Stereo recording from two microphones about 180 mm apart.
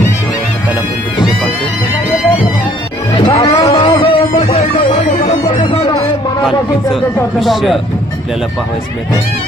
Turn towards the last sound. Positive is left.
turn(degrees=0)  # may be behind; listen again after turning